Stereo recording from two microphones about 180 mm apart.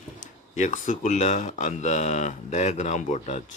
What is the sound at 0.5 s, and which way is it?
Speech, 45° left (ahead or behind).